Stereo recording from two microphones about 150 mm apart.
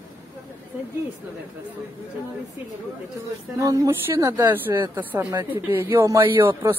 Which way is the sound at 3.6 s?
20° right (ahead or behind).